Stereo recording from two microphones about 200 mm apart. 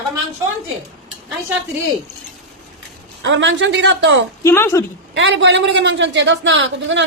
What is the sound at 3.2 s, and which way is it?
A man's voice, 65° right (ahead or behind).